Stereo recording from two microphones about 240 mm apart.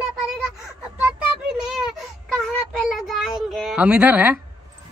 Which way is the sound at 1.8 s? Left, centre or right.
Centre.